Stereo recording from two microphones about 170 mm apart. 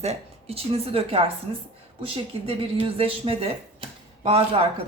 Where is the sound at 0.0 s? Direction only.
40° right (ahead or behind).